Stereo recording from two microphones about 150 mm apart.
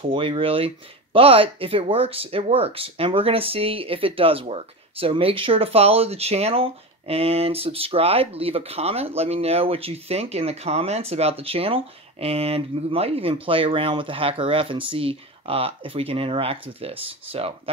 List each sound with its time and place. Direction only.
0.0 s speech: 35° right (ahead or behind)